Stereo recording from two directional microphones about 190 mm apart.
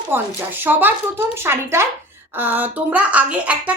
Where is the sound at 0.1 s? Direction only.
10° right (ahead or behind).